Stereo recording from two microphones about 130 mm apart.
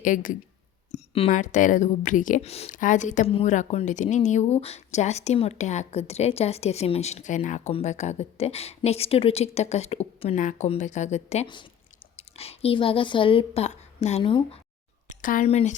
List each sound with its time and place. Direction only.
0.0 s speech: 90° left
0.9 s a sound: 55° left (ahead or behind)
1.3 s speech: 75° left (ahead or behind)
2.4 s a woman's voice: 50° left (ahead or behind)
2.6 s a woman's voice: 80° left
3.2 s a woman's voice: 50° left (ahead or behind)
3.5 s a woman's voice: 65° left (ahead or behind); by 14.6 s 40° left (ahead or behind)
15.1 s a sound: 90° left
15.4 s speech: 55° left (ahead or behind)